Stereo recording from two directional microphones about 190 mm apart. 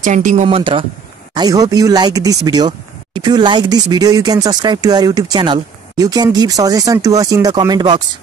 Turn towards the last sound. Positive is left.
turn(degrees=-20)  # may be behind; listen again after turning